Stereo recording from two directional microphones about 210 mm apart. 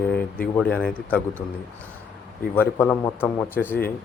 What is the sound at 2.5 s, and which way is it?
A man's voice, 10° left (ahead or behind).